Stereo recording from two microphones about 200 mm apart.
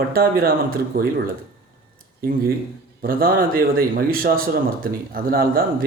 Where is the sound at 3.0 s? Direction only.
45° right (ahead or behind).